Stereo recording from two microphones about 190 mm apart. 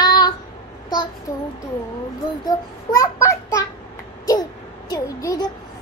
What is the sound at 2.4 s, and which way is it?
Child singing, 15° left (ahead or behind).